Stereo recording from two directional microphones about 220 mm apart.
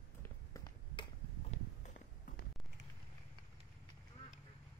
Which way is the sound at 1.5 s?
35° left (ahead or behind).